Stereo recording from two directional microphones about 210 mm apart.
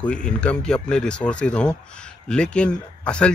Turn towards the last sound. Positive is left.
turn(degrees=5)  # may be behind; listen again after turning